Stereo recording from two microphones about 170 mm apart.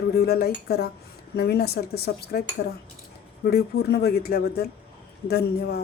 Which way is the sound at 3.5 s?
65° left (ahead or behind).